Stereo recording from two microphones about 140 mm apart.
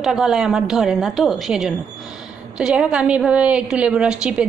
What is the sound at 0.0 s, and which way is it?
A woman's voice, 5° right (ahead or behind).